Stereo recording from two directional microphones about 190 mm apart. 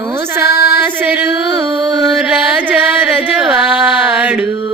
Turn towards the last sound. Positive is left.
turn(degrees=-10)  # may be behind; listen again after turning